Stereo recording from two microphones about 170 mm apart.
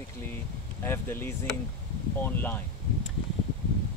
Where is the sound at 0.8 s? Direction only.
15° left (ahead or behind).